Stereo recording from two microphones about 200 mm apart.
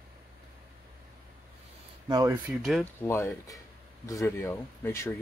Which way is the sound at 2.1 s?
20° right (ahead or behind).